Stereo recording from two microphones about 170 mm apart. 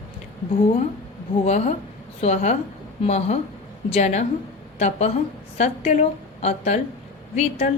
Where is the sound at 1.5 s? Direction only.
40° left (ahead or behind).